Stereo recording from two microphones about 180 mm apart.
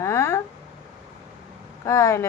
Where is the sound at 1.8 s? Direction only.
15° left (ahead or behind).